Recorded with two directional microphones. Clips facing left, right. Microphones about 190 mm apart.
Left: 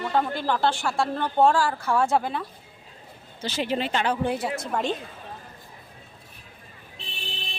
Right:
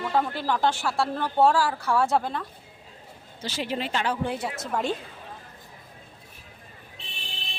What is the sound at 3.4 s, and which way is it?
Speech, 20° left (ahead or behind).